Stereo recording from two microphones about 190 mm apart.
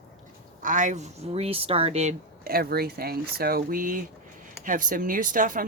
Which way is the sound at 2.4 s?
55° right (ahead or behind).